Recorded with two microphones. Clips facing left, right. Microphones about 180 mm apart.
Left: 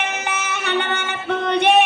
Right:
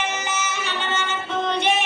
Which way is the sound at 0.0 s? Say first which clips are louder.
Left 1 dB; 60° left (ahead or behind).